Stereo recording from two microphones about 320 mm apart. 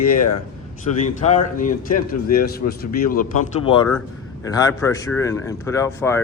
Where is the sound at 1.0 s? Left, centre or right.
Left.